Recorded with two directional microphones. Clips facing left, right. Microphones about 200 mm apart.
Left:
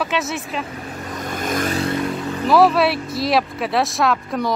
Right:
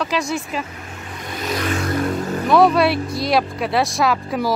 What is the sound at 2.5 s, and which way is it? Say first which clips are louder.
Speech: even; 5° left (ahead or behind).